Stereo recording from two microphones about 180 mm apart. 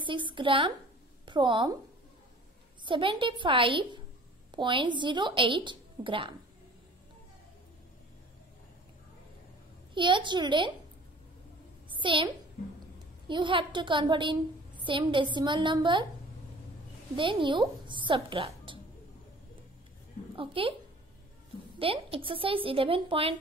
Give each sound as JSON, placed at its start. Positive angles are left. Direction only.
{"t": 0.0, "sound": "a woman's voice", "side_deg": -25}
{"t": 2.8, "sound": "a woman's voice", "side_deg": -30}
{"t": 9.9, "sound": "a woman's voice", "side_deg": -25}
{"t": 11.9, "sound": "a child's voice", "side_deg": -30}
{"t": 13.3, "sound": "a woman's voice", "side_deg": -25}
{"t": 17.1, "sound": "speech", "side_deg": -25}
{"t": 20.3, "sound": "speech", "side_deg": -30}
{"t": 21.7, "sound": "speech", "side_deg": -30}